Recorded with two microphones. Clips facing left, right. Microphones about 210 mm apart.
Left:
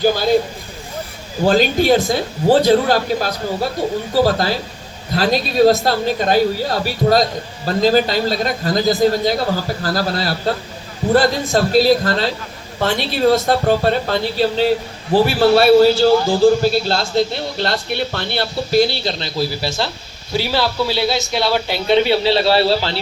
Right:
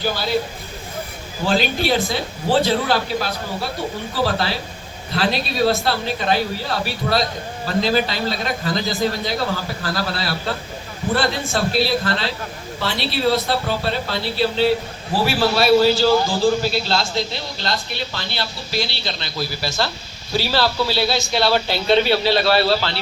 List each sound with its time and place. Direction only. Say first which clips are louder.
0.0 s speech: left 8 dB; 45° left (ahead or behind)
1.5 s speech: left 6 dB; 45° left (ahead or behind)
15.2 s speech: left 6 dB; 55° left (ahead or behind)
16.8 s a man's voice: left 5 dB; 50° left (ahead or behind); by 22.9 s 30° left (ahead or behind)